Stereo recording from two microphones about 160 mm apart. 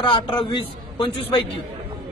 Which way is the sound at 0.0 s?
35° left (ahead or behind).